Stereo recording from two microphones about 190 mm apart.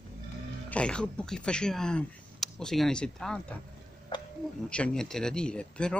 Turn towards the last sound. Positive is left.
turn(degrees=5)  # may be behind; listen again after turning